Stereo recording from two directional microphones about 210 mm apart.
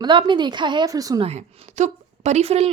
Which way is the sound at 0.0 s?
20° right (ahead or behind).